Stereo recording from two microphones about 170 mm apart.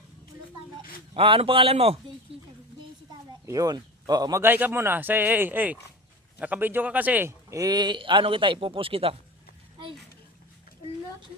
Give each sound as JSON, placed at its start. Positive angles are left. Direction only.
{"t": 1.1, "sound": "a man's voice", "side_deg": -35}
{"t": 3.4, "sound": "a man's voice", "side_deg": -20}